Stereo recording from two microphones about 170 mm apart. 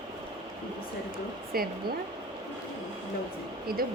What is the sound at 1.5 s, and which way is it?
Speech, 60° right (ahead or behind).